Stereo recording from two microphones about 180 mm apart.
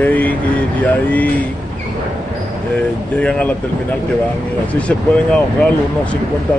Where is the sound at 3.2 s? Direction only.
5° left (ahead or behind).